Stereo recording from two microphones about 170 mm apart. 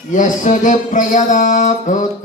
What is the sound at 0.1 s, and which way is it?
Music, 50° left (ahead or behind).